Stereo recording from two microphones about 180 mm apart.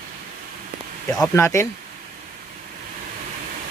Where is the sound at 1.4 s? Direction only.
15° left (ahead or behind).